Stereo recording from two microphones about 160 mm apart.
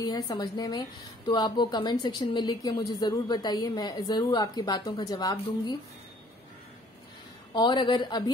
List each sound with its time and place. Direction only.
0.0 s speech: 25° left (ahead or behind)
7.5 s speech: 30° left (ahead or behind)